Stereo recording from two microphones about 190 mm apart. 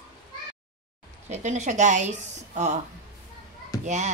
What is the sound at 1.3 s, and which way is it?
A woman's voice, 40° right (ahead or behind).